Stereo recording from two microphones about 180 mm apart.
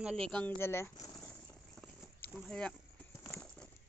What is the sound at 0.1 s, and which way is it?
Speech, 5° left (ahead or behind).